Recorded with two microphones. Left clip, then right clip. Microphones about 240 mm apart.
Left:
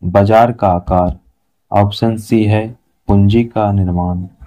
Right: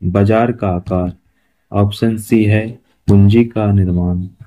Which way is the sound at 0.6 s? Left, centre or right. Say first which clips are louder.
Left 6 dB; left.